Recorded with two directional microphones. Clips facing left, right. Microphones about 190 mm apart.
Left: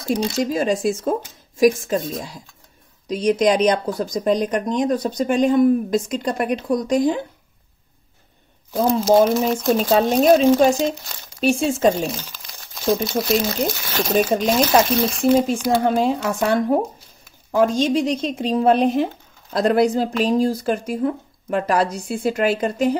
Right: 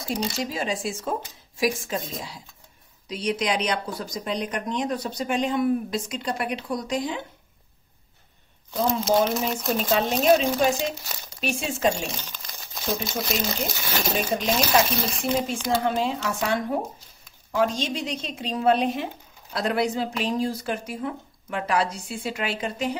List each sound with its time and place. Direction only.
0.1 s speech: 45° left (ahead or behind)
9.0 s speech: centre (ahead or behind)
9.8 s speech: 40° left (ahead or behind)
12.1 s crumpling: centre (ahead or behind)
13.2 s speech: centre (ahead or behind)
16.0 s speech: 45° left (ahead or behind)